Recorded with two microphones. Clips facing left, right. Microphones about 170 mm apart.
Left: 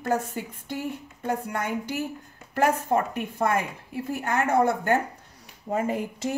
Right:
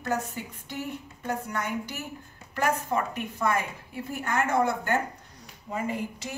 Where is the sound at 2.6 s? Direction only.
50° left (ahead or behind).